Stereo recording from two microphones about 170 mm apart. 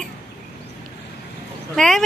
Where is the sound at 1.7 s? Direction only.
5° left (ahead or behind).